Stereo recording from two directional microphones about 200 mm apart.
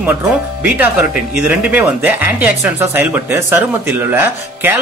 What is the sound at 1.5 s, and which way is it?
Speech, 5° right (ahead or behind).